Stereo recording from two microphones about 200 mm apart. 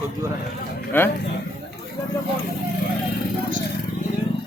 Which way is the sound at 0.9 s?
10° left (ahead or behind).